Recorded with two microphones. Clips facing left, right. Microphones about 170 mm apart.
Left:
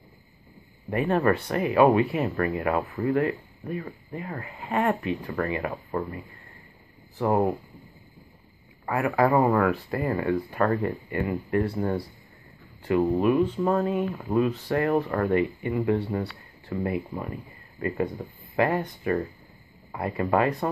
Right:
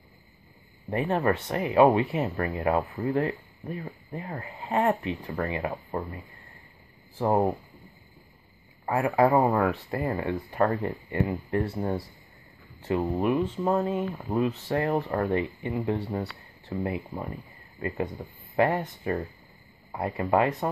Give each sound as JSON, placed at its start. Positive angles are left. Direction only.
{"t": 0.8, "sound": "speech", "side_deg": -20}
{"t": 7.2, "sound": "speech", "side_deg": -25}
{"t": 8.8, "sound": "speech", "side_deg": -25}
{"t": 17.7, "sound": "speech", "side_deg": -20}